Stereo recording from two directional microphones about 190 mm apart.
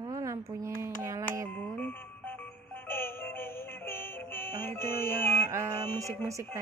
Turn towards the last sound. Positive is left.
turn(degrees=-15)  # may be behind; listen again after turning